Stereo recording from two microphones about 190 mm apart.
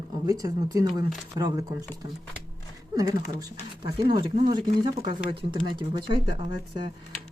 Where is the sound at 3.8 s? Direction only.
20° right (ahead or behind).